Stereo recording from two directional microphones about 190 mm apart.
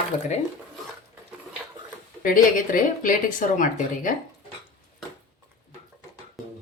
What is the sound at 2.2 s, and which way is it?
Speech, 45° left (ahead or behind).